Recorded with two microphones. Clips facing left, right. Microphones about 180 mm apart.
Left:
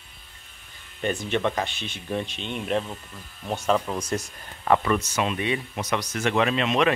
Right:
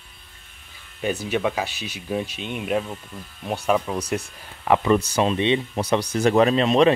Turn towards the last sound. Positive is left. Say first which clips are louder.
# right 6 dB
turn(degrees=-35)  # may be behind; listen again after turning